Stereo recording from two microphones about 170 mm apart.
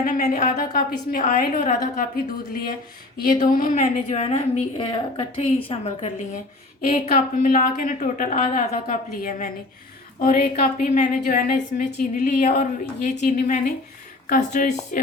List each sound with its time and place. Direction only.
0.0 s a woman's voice: 50° left (ahead or behind)
6.9 s a woman's voice: 50° left (ahead or behind)
12.8 s a woman's voice: 45° left (ahead or behind)